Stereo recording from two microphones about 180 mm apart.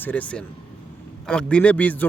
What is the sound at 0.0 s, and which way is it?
A man's voice, 10° left (ahead or behind).